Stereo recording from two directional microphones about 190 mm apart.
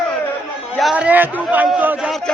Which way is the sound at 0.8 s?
5° right (ahead or behind).